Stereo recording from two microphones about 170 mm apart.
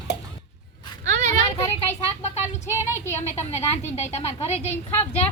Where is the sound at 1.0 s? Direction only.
45° right (ahead or behind).